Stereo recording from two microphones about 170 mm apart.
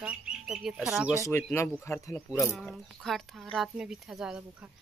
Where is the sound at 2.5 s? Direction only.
Centre (ahead or behind).